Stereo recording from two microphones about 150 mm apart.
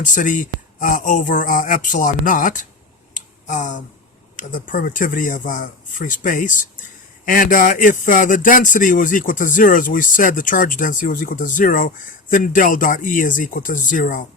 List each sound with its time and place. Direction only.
0.0 s speech: 60° left (ahead or behind)
3.2 s a sound: 55° left (ahead or behind)
4.4 s speech: 60° left (ahead or behind)